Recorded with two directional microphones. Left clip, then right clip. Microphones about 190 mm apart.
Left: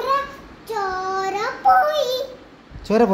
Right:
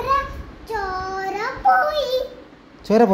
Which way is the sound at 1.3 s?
5° left (ahead or behind).